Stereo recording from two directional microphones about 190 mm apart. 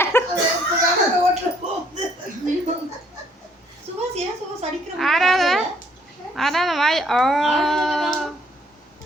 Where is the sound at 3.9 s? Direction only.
30° right (ahead or behind).